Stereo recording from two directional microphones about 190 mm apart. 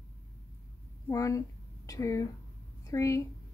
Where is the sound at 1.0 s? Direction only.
15° left (ahead or behind).